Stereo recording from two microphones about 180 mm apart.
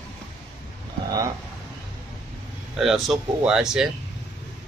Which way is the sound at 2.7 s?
Centre (ahead or behind).